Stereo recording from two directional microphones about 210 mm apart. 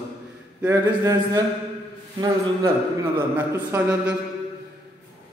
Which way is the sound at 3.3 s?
10° right (ahead or behind).